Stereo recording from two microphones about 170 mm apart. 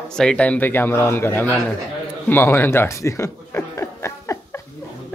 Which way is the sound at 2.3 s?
15° left (ahead or behind).